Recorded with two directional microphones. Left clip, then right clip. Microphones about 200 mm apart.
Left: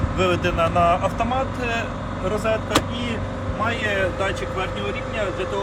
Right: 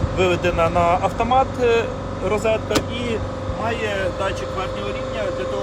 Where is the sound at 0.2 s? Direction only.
35° right (ahead or behind).